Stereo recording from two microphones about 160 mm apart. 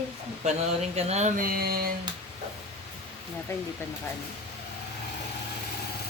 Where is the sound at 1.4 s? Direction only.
70° right (ahead or behind).